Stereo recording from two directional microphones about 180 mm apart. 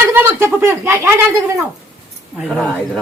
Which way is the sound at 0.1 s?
10° right (ahead or behind).